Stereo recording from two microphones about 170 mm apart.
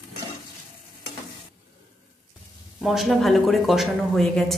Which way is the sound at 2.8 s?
Centre (ahead or behind).